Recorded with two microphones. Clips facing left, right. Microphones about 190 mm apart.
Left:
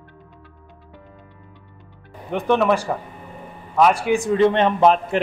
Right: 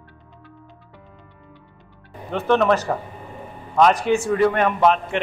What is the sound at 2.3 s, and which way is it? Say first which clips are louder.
Speech: even; 15° left (ahead or behind).